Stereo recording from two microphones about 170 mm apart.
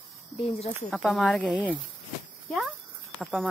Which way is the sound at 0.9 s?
Centre (ahead or behind).